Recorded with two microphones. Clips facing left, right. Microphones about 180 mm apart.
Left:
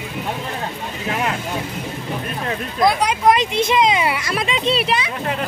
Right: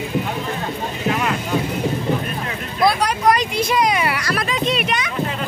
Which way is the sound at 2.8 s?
20° left (ahead or behind).